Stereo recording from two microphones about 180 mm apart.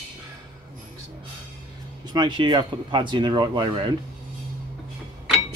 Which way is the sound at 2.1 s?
25° right (ahead or behind).